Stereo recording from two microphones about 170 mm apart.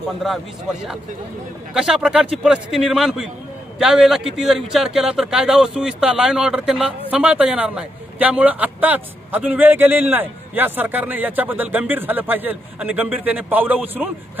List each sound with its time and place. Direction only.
1.7 s a man's voice: 5° right (ahead or behind)